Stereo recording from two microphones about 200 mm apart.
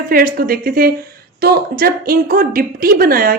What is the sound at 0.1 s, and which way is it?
A woman's voice, 45° right (ahead or behind).